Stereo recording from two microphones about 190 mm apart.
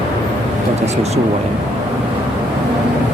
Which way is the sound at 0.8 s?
35° right (ahead or behind).